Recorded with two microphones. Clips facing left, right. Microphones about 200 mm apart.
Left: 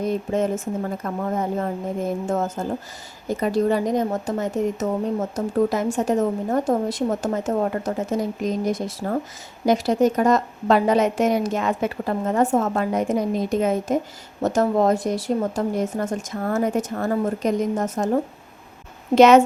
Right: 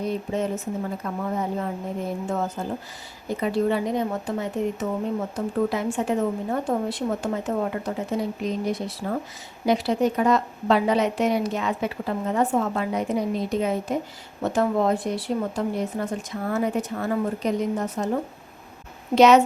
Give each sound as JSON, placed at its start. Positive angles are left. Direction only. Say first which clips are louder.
{"t": 0.0, "sound": "a woman's voice", "louder": "left 4 dB", "side_deg": 50}